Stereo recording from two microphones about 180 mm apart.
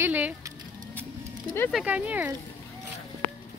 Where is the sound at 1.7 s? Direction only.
10° right (ahead or behind).